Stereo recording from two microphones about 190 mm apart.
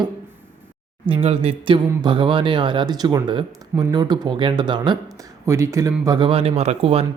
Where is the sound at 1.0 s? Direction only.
30° right (ahead or behind).